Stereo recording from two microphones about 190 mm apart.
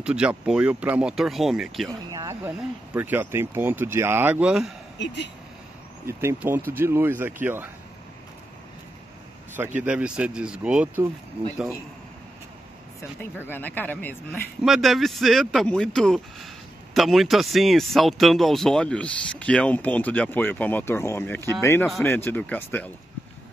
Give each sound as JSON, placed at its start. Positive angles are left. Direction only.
{"t": 0.0, "sound": "speech", "side_deg": -5}
{"t": 2.0, "sound": "a sound", "side_deg": -20}
{"t": 2.9, "sound": "speech", "side_deg": -10}
{"t": 4.9, "sound": "speech", "side_deg": 70}
{"t": 6.0, "sound": "speech", "side_deg": -10}
{"t": 9.8, "sound": "speech", "side_deg": -5}
{"t": 13.5, "sound": "speech", "side_deg": 10}
{"t": 14.6, "sound": "speech", "side_deg": 0}